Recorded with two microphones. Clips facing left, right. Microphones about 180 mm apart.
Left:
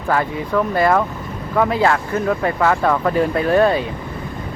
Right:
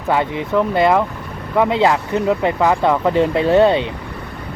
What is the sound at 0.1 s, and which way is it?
Speech, 20° right (ahead or behind).